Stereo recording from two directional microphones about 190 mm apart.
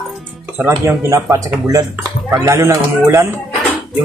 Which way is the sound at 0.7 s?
15° right (ahead or behind).